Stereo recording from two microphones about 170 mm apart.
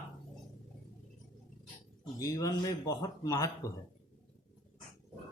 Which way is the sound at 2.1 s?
20° left (ahead or behind).